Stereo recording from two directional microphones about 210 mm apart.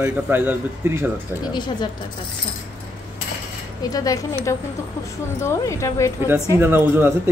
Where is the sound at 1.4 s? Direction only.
20° left (ahead or behind).